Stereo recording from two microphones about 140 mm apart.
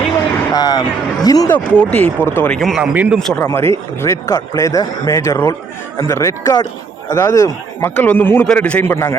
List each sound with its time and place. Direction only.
0.5 s a man's voice: 30° left (ahead or behind)
1.5 s a man's voice: 10° left (ahead or behind)
2.6 s speech: centre (ahead or behind)
2.9 s a man's voice: 10° right (ahead or behind)
3.3 s a man's voice: 15° left (ahead or behind)